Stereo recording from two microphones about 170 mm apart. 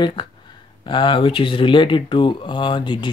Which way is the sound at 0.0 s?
30° left (ahead or behind).